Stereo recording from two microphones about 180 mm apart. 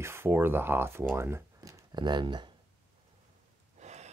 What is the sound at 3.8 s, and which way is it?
Rain, 40° right (ahead or behind).